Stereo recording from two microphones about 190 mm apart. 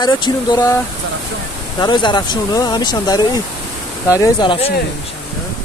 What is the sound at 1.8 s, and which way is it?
Speech, 25° left (ahead or behind).